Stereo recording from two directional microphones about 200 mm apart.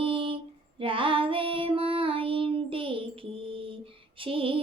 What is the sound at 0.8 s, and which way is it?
Child singing, 25° right (ahead or behind).